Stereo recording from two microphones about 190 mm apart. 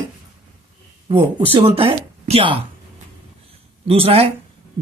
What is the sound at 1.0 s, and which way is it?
Speech, 25° right (ahead or behind).